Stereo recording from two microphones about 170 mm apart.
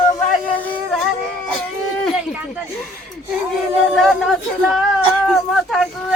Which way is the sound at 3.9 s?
Centre (ahead or behind).